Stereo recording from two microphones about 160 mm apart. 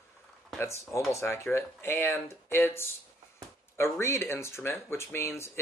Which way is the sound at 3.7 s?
15° left (ahead or behind).